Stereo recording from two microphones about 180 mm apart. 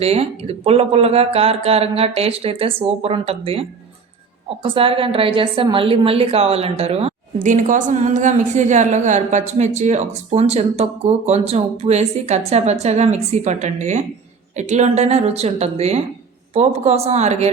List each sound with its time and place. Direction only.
0.0 s a woman's voice: 35° right (ahead or behind)